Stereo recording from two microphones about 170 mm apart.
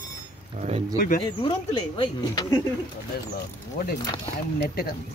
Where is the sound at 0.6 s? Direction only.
35° right (ahead or behind).